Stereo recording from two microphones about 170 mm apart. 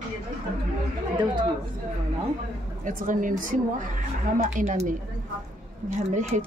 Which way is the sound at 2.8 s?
50° right (ahead or behind).